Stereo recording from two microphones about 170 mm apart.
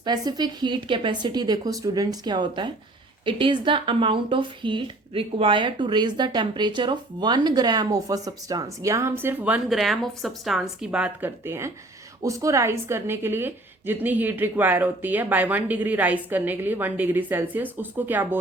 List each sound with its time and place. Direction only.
0.0 s a woman's voice: 25° right (ahead or behind)